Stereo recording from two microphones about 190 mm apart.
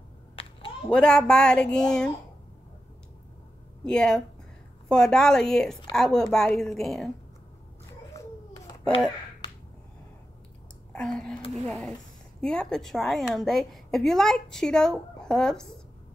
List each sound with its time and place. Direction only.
0.8 s a woman's voice: 5° left (ahead or behind)
3.8 s a woman's voice: 5° left (ahead or behind)
8.1 s a sound: 20° left (ahead or behind)
10.9 s a woman's voice: 5° left (ahead or behind)